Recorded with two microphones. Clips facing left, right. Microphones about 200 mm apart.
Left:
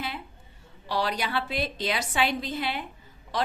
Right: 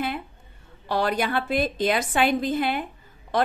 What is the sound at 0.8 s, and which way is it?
A woman's voice, 50° right (ahead or behind).